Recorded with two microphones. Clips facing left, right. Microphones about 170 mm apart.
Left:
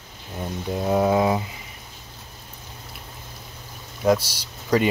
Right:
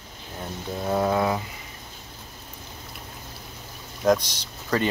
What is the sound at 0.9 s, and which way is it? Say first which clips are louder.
Speech: left 3 dB; 15° left (ahead or behind).